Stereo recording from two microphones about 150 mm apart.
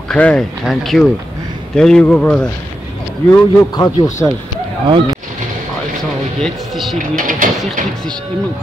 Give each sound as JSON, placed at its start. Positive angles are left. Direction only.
{"t": 0.1, "sound": "speech", "side_deg": 5}
{"t": 3.3, "sound": "a man's voice", "side_deg": 25}
{"t": 4.8, "sound": "speech", "side_deg": -30}
{"t": 6.4, "sound": "speech", "side_deg": 0}
{"t": 7.2, "sound": "speech", "side_deg": -60}